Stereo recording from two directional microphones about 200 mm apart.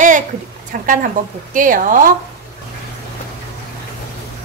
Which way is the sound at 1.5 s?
40° right (ahead or behind).